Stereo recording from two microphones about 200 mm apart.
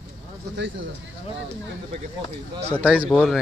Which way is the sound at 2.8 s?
5° right (ahead or behind).